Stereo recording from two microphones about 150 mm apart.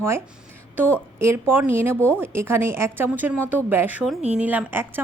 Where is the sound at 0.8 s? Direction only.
10° right (ahead or behind).